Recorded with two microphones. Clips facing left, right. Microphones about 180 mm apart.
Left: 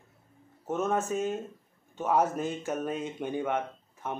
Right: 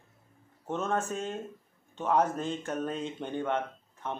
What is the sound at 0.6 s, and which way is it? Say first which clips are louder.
Speech: left 2 dB; 5° left (ahead or behind).